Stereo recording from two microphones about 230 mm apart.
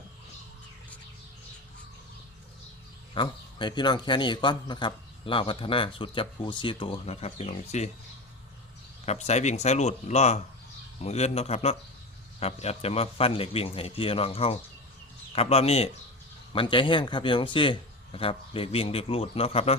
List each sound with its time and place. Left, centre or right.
3.2 s a man's voice: centre
9.0 s a man's voice: left